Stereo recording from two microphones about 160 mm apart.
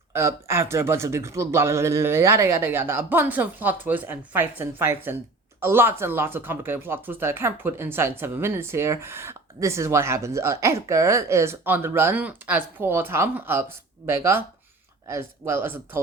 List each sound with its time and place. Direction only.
0.1 s speech: 15° right (ahead or behind)